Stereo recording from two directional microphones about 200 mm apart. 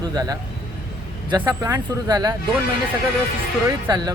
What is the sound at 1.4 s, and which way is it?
Speech, 15° right (ahead or behind).